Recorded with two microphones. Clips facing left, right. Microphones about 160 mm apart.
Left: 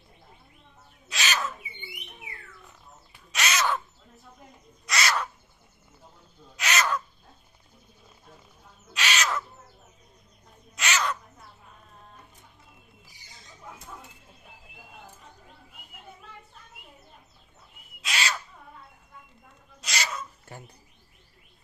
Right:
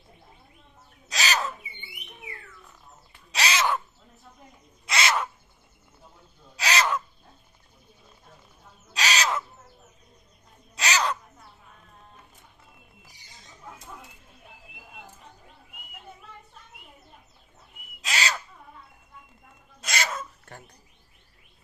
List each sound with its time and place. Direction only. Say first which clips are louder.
1.0 s bird: right 2 dB; 40° right (ahead or behind)
3.3 s crow: right 2 dB; 30° right (ahead or behind)
4.9 s crow: right 2 dB; 25° right (ahead or behind)
6.6 s crow: right 2 dB; 35° right (ahead or behind)
8.9 s owl: right 2 dB; 35° right (ahead or behind)
10.8 s bird: right 2 dB; 35° right (ahead or behind)
18.0 s crow: right 2 dB; 40° right (ahead or behind)
19.8 s a sound: right 3 dB; 50° right (ahead or behind)
20.5 s bird: left 1 dB; 5° left (ahead or behind)